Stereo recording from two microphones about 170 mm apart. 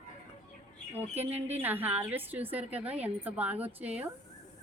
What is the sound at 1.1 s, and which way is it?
A woman's voice, 10° right (ahead or behind).